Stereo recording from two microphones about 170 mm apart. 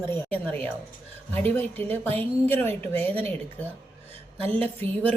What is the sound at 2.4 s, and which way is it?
Speech, 10° left (ahead or behind).